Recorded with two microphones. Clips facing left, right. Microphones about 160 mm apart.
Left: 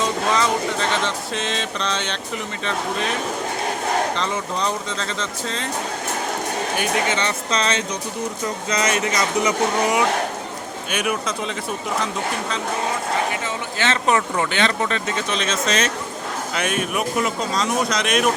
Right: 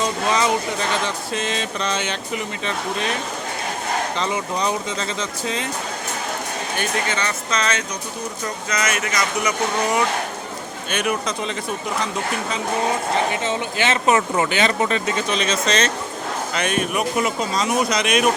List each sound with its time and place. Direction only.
0.0 s speech: 5° right (ahead or behind)
4.9 s speech: 5° right (ahead or behind)
7.1 s speech: 25° left (ahead or behind)
10.9 s speech: 5° left (ahead or behind)
13.5 s speech: 15° right (ahead or behind)